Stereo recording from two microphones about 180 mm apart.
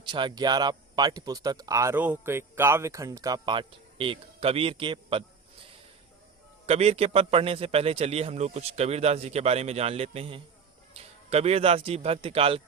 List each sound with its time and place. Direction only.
0.1 s speech: 25° right (ahead or behind)
6.7 s a man's voice: 35° right (ahead or behind)